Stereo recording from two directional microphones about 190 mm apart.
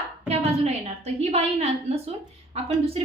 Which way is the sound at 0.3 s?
35° right (ahead or behind).